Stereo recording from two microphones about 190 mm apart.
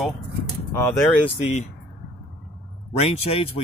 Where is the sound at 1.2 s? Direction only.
35° left (ahead or behind).